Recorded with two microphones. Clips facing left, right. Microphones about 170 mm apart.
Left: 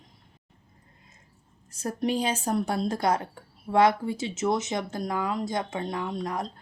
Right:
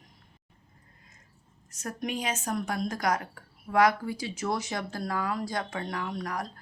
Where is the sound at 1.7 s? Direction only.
30° left (ahead or behind).